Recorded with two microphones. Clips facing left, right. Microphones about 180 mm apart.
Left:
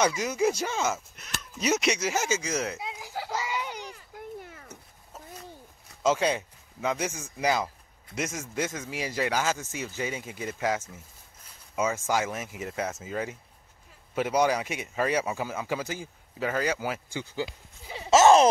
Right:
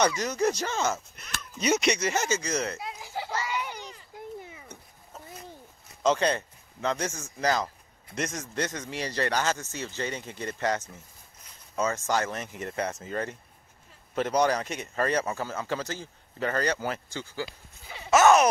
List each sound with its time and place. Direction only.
0.2 s speech: 5° left (ahead or behind)
2.9 s children playing: 5° left (ahead or behind)
3.4 s a sound: 15° left (ahead or behind)
4.5 s cat: centre (ahead or behind)
6.0 s a man's voice: 5° left (ahead or behind); by 18.5 s 25° left (ahead or behind)